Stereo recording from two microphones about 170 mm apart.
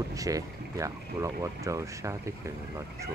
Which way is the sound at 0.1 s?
20° right (ahead or behind).